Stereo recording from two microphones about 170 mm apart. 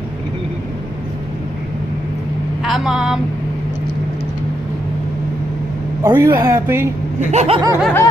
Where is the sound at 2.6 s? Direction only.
Centre (ahead or behind).